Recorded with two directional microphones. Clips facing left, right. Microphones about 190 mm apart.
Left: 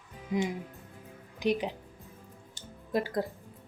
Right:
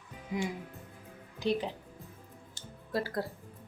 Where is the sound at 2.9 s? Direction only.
15° left (ahead or behind).